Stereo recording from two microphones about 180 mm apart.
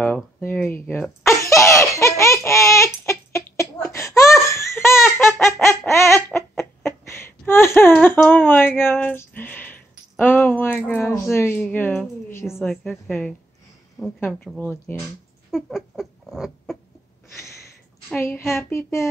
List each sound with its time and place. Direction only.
0.0 s speech: 10° left (ahead or behind)
1.2 s laughter: 15° left (ahead or behind)
6.6 s a sound: 15° left (ahead or behind)
12.8 s a sound: centre (ahead or behind)
14.2 s speech: 10° left (ahead or behind)
15.5 s rodents: centre (ahead or behind)
18.1 s speech: 10° left (ahead or behind)